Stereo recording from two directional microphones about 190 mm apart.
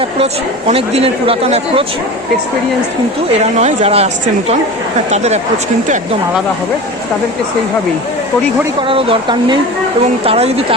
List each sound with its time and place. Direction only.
0.7 s a woman's voice: 30° right (ahead or behind)
3.3 s a woman's voice: 35° right (ahead or behind)
8.9 s a woman's voice: 30° right (ahead or behind)